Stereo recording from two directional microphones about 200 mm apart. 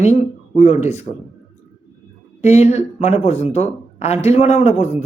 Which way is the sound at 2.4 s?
35° left (ahead or behind).